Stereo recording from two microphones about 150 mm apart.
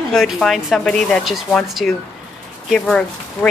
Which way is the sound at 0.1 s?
Centre (ahead or behind).